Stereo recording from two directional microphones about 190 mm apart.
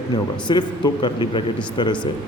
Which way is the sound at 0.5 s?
20° left (ahead or behind).